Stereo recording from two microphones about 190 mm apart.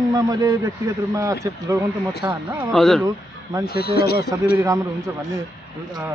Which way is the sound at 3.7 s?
55° left (ahead or behind).